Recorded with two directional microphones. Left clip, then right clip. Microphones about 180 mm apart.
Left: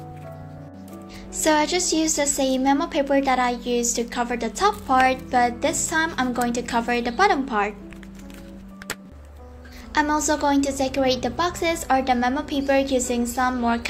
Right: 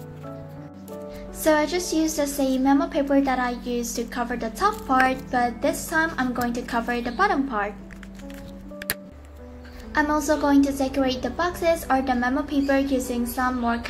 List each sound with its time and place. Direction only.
1.4 s a woman's voice: 30° left (ahead or behind)
9.9 s a woman's voice: 30° left (ahead or behind)